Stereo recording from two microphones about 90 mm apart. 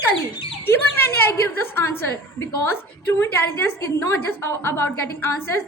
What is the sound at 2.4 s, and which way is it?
A woman's voice, 30° left (ahead or behind).